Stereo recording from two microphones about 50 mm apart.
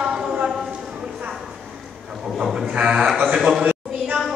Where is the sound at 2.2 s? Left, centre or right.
Centre.